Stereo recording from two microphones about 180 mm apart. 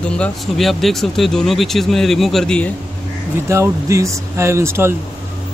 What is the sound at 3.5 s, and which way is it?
Speech, 15° right (ahead or behind).